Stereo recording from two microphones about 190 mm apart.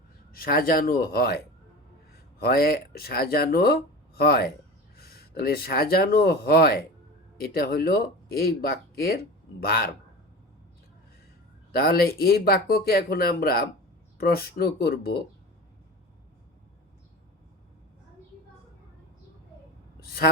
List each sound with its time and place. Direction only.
0.3 s speech: 50° left (ahead or behind)
2.4 s speech: 55° left (ahead or behind)
11.7 s speech: 55° left (ahead or behind)
20.0 s speech: 55° left (ahead or behind)